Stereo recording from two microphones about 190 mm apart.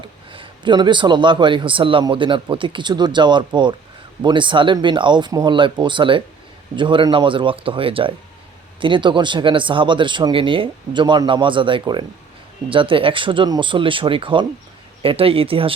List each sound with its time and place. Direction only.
0.3 s speech: 25° right (ahead or behind)